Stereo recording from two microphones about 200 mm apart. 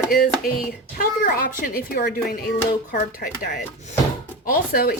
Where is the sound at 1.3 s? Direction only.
45° left (ahead or behind).